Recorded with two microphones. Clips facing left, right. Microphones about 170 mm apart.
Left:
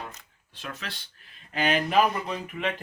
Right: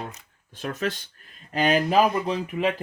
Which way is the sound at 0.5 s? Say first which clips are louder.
Right 11 dB; 45° right (ahead or behind).